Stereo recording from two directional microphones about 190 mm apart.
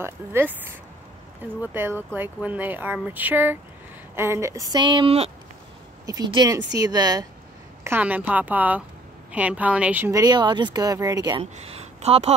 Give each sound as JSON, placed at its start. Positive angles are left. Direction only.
{"t": 0.0, "sound": "speech", "side_deg": -10}
{"t": 7.8, "sound": "speech", "side_deg": -10}
{"t": 11.5, "sound": "speech", "side_deg": -35}